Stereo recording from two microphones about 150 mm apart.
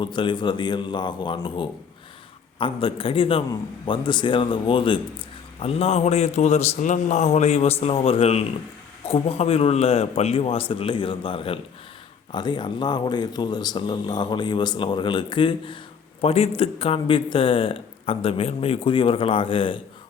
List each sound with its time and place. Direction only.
0.0 s a man's voice: 30° left (ahead or behind)